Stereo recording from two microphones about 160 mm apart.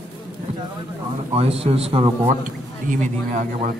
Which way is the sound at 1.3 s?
40° right (ahead or behind).